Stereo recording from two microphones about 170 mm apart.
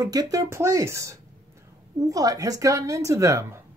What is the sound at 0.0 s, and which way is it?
Speech, 25° right (ahead or behind).